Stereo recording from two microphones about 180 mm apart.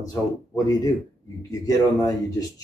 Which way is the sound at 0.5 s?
20° left (ahead or behind).